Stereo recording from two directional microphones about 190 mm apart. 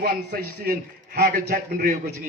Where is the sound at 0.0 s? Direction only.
50° right (ahead or behind).